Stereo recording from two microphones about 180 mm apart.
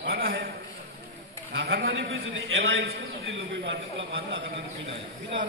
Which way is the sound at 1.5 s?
90° right.